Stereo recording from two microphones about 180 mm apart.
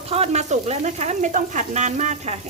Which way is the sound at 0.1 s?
35° right (ahead or behind).